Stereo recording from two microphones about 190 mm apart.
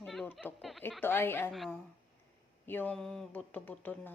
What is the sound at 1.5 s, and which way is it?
A woman's voice, centre (ahead or behind).